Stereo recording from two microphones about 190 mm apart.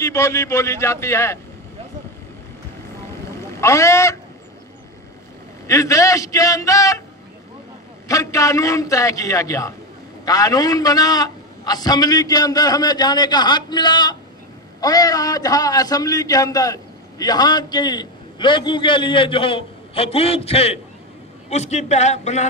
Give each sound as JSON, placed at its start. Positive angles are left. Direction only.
{"t": 0.0, "sound": "a man's voice", "side_deg": 15}
{"t": 3.6, "sound": "a man's voice", "side_deg": 15}
{"t": 5.7, "sound": "a man's voice", "side_deg": 15}
{"t": 8.1, "sound": "a man's voice", "side_deg": 15}